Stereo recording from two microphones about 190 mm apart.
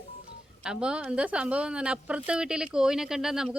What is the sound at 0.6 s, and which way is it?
Speech, 5° right (ahead or behind).